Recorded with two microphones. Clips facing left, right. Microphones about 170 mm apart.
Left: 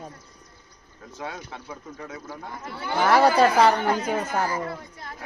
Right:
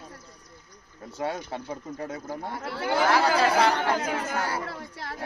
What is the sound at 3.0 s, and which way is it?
Speech, 50° left (ahead or behind).